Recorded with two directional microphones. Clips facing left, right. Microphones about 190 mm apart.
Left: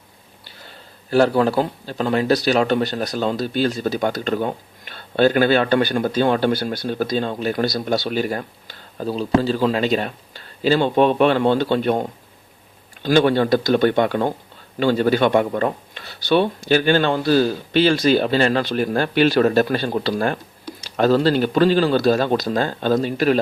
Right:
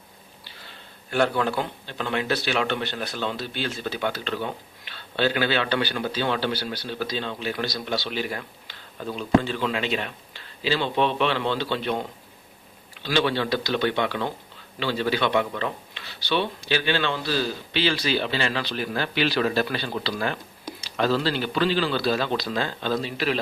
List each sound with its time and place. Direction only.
1.1 s speech: 35° left (ahead or behind)